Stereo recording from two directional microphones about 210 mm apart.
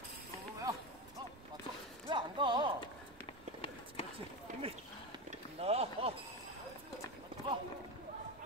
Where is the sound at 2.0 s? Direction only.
20° right (ahead or behind).